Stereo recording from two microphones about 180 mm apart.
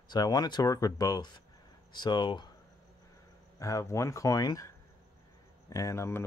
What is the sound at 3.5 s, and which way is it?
Speech, 15° left (ahead or behind).